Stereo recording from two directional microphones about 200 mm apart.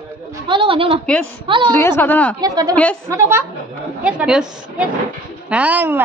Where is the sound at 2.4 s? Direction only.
20° right (ahead or behind).